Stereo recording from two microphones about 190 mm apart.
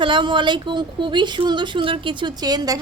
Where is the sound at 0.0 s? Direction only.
25° right (ahead or behind).